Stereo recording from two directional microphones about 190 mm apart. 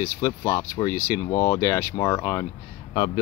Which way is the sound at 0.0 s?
15° left (ahead or behind).